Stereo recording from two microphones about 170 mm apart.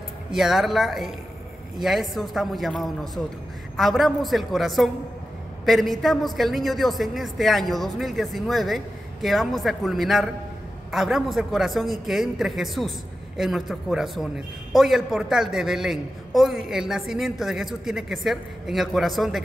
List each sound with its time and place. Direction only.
0.3 s a man's voice: centre (ahead or behind)